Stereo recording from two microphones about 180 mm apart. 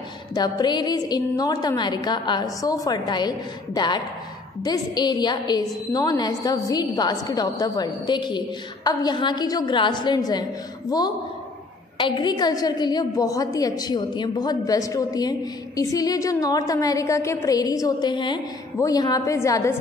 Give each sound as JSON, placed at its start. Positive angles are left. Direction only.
{"t": 0.3, "sound": "a woman's voice", "side_deg": 20}